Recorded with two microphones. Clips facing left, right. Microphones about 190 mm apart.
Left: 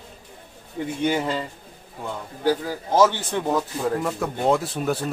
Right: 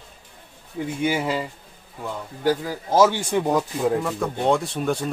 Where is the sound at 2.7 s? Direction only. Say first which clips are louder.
Right 2 dB; 10° right (ahead or behind).